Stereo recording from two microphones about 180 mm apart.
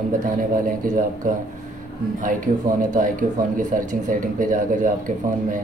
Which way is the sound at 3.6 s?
45° right (ahead or behind).